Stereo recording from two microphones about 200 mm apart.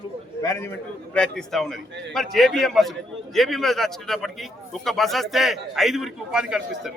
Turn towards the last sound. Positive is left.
turn(degrees=-5)  # may be behind; listen again after turning